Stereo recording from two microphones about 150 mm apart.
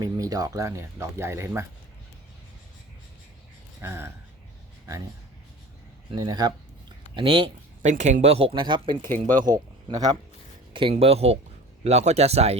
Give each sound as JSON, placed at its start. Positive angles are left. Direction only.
{"t": 0.0, "sound": "speech", "side_deg": -25}
{"t": 3.8, "sound": "speech", "side_deg": -15}
{"t": 6.1, "sound": "speech", "side_deg": -25}
{"t": 7.8, "sound": "speech", "side_deg": -50}
{"t": 9.2, "sound": "speech", "side_deg": -60}
{"t": 9.5, "sound": "speech", "side_deg": -25}
{"t": 10.9, "sound": "speech", "side_deg": -45}